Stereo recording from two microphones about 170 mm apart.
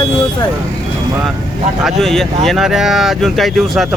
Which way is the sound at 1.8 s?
Centre (ahead or behind).